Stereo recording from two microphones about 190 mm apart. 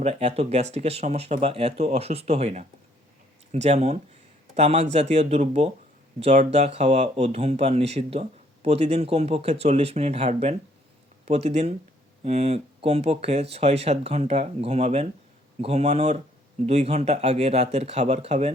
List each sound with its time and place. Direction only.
0.0 s speech: 35° right (ahead or behind)